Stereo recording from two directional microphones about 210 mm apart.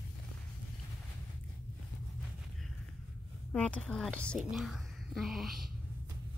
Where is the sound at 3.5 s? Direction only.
5° left (ahead or behind).